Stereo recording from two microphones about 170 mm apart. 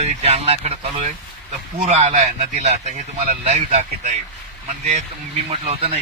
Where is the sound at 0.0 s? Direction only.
40° right (ahead or behind).